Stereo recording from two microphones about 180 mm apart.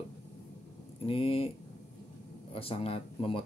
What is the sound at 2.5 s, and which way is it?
Speech, 30° left (ahead or behind).